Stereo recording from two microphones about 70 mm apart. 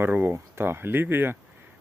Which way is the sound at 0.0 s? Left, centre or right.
Right.